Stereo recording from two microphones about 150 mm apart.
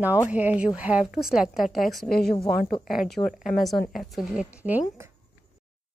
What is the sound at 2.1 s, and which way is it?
Speech, 90° left.